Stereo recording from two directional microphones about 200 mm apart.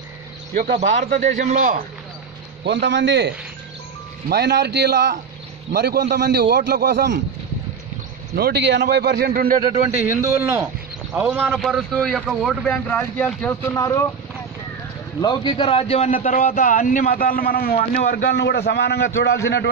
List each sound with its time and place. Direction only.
0.6 s speech: 40° right (ahead or behind)
2.6 s a man's voice: 60° right (ahead or behind)
8.4 s a man's voice: 55° right (ahead or behind)
9.6 s speech: 25° right (ahead or behind)
10.0 s a man's voice: 15° right (ahead or behind); by 14.0 s 15° left (ahead or behind)
15.2 s a man's voice: 25° left (ahead or behind); by 19.4 s 60° left (ahead or behind)